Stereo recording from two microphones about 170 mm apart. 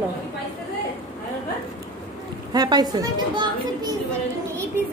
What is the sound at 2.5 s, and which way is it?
A woman's voice, 25° right (ahead or behind).